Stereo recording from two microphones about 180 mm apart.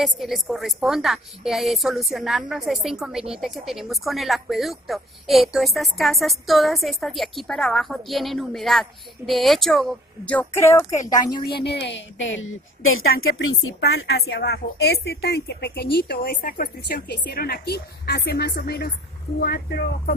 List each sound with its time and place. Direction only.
0.0 s a woman's voice: centre (ahead or behind); by 11.4 s 20° left (ahead or behind)
11.6 s a woman's voice: 70° left (ahead or behind); by 13.1 s 90° left
13.7 s a woman's voice: 65° left (ahead or behind)